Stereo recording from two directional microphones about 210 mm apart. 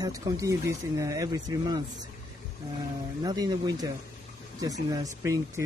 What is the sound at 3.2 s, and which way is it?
Speech, 20° right (ahead or behind).